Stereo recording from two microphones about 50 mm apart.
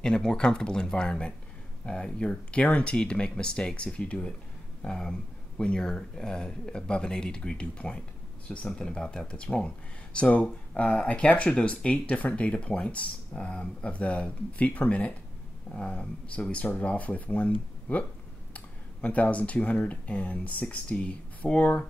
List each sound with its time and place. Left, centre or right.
0.0 s speech: centre